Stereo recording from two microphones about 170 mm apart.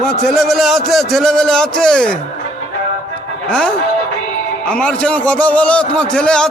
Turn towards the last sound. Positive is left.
turn(degrees=5)  # may be behind; listen again after turning